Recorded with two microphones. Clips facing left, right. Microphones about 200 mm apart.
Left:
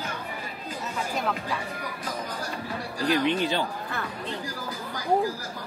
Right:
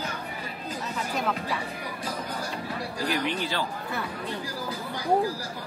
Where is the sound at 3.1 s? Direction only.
20° left (ahead or behind).